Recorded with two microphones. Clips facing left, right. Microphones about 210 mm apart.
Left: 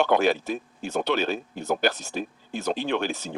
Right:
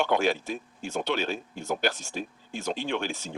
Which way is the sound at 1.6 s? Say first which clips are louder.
Left 4 dB; 60° left (ahead or behind).